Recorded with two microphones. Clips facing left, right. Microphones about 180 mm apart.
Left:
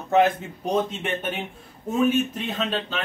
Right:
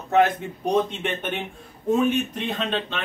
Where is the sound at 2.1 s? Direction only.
Centre (ahead or behind).